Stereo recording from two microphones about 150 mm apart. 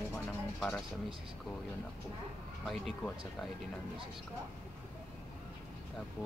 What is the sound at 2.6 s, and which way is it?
Speech, centre (ahead or behind).